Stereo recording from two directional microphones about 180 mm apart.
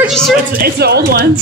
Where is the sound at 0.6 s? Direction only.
60° right (ahead or behind).